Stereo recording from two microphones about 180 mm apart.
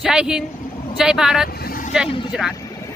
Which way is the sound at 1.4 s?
55° left (ahead or behind).